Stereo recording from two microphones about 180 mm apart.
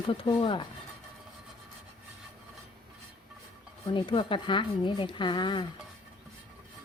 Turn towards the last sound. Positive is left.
turn(degrees=25)  # may be behind; listen again after turning